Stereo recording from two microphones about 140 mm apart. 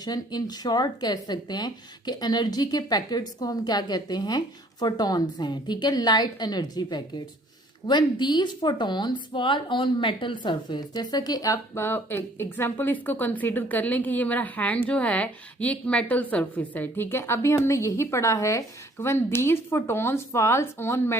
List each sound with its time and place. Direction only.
0.0 s a woman's voice: 30° left (ahead or behind)